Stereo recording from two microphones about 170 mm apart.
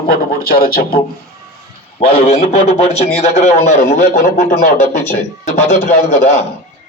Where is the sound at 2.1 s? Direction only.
40° left (ahead or behind).